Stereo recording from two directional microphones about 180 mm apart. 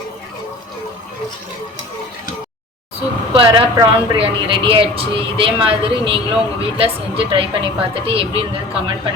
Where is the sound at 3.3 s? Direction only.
30° right (ahead or behind).